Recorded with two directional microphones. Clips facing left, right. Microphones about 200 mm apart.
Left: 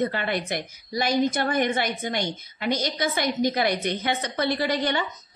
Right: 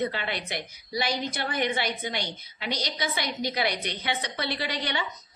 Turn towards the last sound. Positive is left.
turn(degrees=50)  # may be behind; listen again after turning